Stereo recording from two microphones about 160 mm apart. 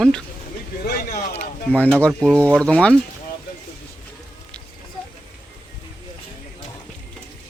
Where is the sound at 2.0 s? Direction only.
5° left (ahead or behind).